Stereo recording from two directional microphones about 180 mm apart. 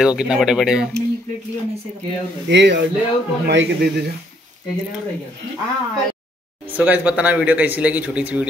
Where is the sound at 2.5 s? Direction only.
75° right (ahead or behind).